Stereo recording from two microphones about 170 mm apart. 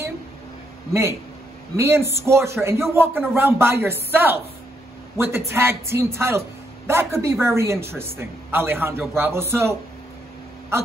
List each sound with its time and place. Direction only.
1.8 s a man's voice: 15° right (ahead or behind)